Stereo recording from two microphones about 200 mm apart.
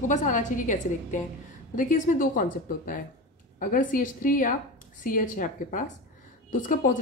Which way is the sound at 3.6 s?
40° left (ahead or behind).